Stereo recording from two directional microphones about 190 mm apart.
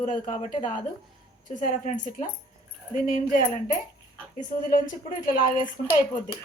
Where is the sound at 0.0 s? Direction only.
45° left (ahead or behind).